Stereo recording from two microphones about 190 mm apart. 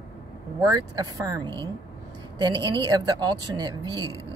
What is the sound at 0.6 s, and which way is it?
A woman's voice, 20° right (ahead or behind).